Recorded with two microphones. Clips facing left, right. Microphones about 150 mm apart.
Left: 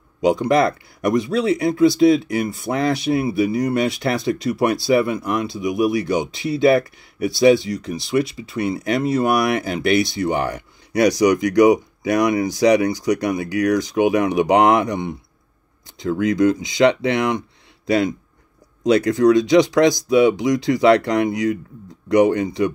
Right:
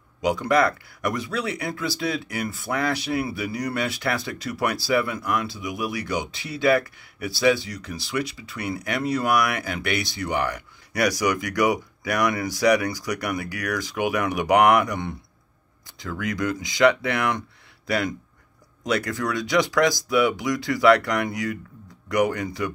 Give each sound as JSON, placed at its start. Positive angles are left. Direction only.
{"t": 0.2, "sound": "speech", "side_deg": 25}